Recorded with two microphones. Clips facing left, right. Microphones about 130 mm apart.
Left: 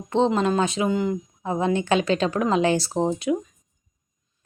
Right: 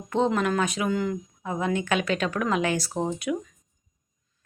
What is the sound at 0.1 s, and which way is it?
A woman's voice, 25° left (ahead or behind).